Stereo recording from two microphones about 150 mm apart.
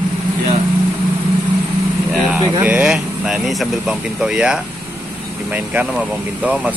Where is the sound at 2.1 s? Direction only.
5° right (ahead or behind).